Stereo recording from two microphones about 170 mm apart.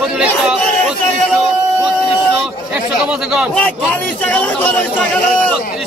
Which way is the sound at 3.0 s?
5° right (ahead or behind).